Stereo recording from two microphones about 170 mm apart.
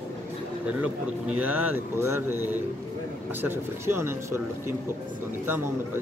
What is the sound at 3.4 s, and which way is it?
Speech, 15° right (ahead or behind).